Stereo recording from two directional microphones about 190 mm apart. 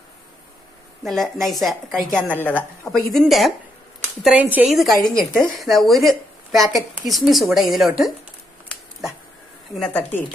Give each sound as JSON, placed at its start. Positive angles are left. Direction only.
{"t": 1.0, "sound": "a woman's voice", "side_deg": 0}
{"t": 3.1, "sound": "speech", "side_deg": 0}
{"t": 9.8, "sound": "a woman's voice", "side_deg": 5}